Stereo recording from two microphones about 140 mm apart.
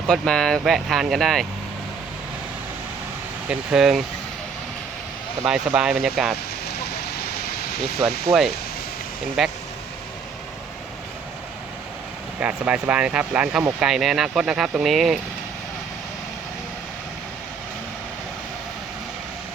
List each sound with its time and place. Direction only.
0.1 s speech: 5° left (ahead or behind)
3.5 s speech: 5° right (ahead or behind)
5.5 s speech: 5° right (ahead or behind)
8.0 s speech: centre (ahead or behind)
12.4 s speech: 10° right (ahead or behind)